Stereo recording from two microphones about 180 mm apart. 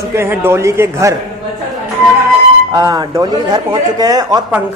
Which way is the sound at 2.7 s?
20° right (ahead or behind).